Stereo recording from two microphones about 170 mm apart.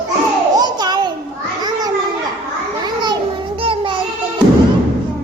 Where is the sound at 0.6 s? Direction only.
25° right (ahead or behind).